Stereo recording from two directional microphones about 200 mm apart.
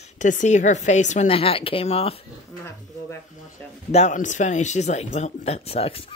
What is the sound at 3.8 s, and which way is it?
Speech, 35° left (ahead or behind).